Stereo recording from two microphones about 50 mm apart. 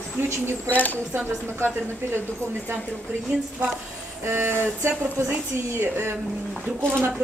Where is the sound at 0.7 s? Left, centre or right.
Left.